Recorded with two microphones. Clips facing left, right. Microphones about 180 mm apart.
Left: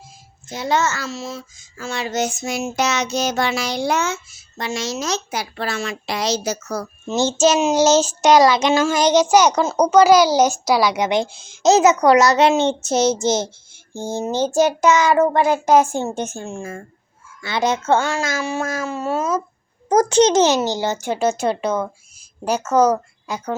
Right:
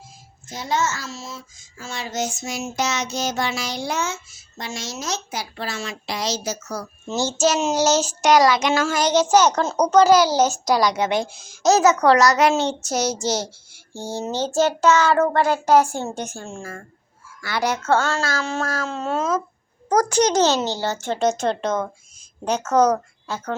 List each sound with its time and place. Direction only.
0.5 s a child's voice: 65° left (ahead or behind)
1.8 s child singing: 65° left (ahead or behind)
7.1 s child singing: 20° left (ahead or behind)
9.6 s a child's voice: 10° left (ahead or behind)
11.3 s child singing: 25° left (ahead or behind)
14.1 s a child's voice: 15° left (ahead or behind)
17.4 s child singing: 25° left (ahead or behind)
18.9 s a child's voice: 5° left (ahead or behind)
19.9 s a child's voice: 25° left (ahead or behind); by 23.6 s 10° left (ahead or behind)